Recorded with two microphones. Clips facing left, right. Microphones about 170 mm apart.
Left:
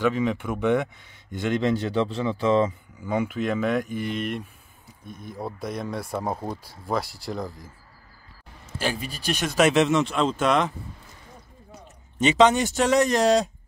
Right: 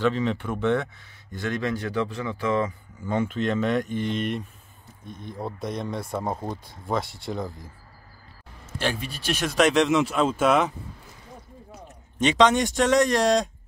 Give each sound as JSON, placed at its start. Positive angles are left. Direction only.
{"t": 0.0, "sound": "speech", "side_deg": 10}
{"t": 3.0, "sound": "speech", "side_deg": 10}
{"t": 8.7, "sound": "speech", "side_deg": 0}
{"t": 12.2, "sound": "speech", "side_deg": 5}